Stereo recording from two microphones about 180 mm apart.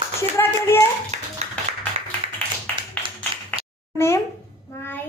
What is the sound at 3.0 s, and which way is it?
Clapping, 25° right (ahead or behind).